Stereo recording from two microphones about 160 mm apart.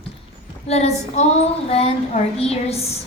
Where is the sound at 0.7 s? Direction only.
40° left (ahead or behind).